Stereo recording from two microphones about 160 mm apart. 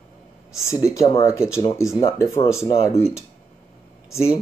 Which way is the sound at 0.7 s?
20° left (ahead or behind).